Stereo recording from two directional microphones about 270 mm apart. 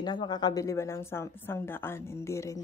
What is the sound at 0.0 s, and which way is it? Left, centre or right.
A woman's voice, centre.